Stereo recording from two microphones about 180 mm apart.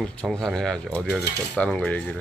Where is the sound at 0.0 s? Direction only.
5° left (ahead or behind).